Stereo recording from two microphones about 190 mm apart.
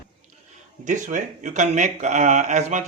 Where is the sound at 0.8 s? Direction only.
40° right (ahead or behind).